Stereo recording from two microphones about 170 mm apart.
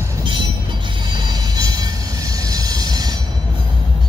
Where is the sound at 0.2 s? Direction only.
30° right (ahead or behind).